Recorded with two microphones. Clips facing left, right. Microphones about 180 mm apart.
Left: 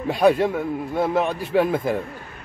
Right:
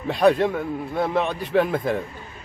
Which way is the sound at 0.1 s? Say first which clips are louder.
Even; 5° left (ahead or behind).